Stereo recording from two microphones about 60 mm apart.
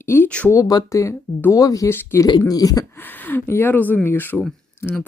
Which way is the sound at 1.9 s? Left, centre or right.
Left.